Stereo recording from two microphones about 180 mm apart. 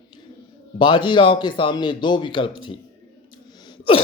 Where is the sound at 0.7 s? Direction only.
25° left (ahead or behind).